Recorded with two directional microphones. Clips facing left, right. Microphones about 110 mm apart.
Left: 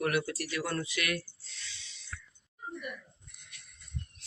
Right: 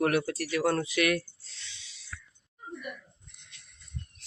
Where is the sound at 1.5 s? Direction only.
20° right (ahead or behind).